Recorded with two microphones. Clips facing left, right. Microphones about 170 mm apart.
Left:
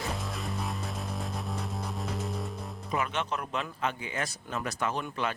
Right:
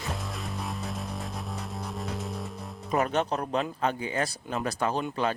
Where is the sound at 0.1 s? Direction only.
Centre (ahead or behind).